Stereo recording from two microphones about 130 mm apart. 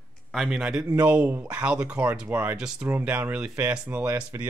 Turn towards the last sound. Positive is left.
turn(degrees=-15)  # may be behind; listen again after turning